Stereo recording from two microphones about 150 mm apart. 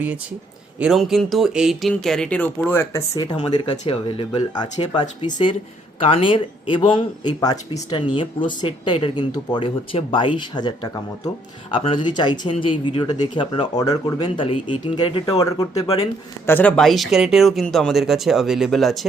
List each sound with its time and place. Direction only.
0.8 s speech: 5° right (ahead or behind); by 3.0 s 15° left (ahead or behind)
3.2 s speech: 30° left (ahead or behind)
6.0 s speech: 40° left (ahead or behind); by 7.9 s 25° left (ahead or behind)
7.9 s speech: 35° left (ahead or behind)
16.5 s speech: 10° left (ahead or behind)